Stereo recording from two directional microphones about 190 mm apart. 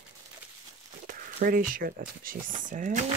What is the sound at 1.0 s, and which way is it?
Speech, 45° right (ahead or behind).